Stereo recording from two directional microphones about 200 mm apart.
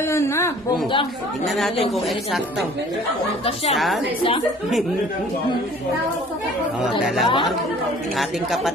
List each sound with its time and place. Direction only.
0.0 s a woman's voice: 15° left (ahead or behind)
3.7 s a woman's voice: centre (ahead or behind)
6.8 s a woman's voice: centre (ahead or behind)